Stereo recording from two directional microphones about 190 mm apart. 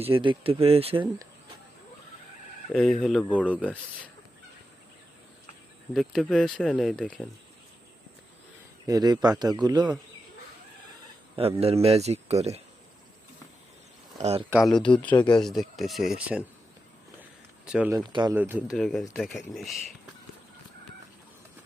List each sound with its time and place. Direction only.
0.0 s a man's voice: 25° right (ahead or behind)
2.7 s speech: centre (ahead or behind)
5.9 s speech: centre (ahead or behind)
8.9 s a man's voice: 20° right (ahead or behind)
11.3 s speech: 30° right (ahead or behind)
14.2 s speech: 35° right (ahead or behind)
15.1 s speech: 25° left (ahead or behind)
15.4 s speech: centre (ahead or behind)
17.7 s speech: 5° right (ahead or behind)
17.9 s a man's voice: 25° right (ahead or behind)
18.3 s speech: 10° right (ahead or behind)
18.8 s speech: centre (ahead or behind)